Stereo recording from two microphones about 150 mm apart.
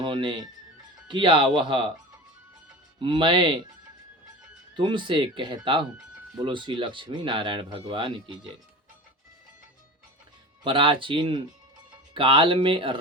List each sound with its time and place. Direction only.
0.0 s speech: 35° right (ahead or behind)
3.0 s speech: 35° right (ahead or behind)
4.7 s speech: 30° right (ahead or behind)
10.6 s speech: 35° right (ahead or behind)